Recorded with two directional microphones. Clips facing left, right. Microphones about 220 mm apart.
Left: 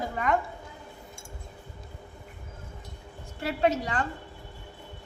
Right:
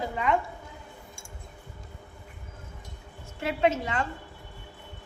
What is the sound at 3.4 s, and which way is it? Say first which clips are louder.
Speech: even; 35° left (ahead or behind).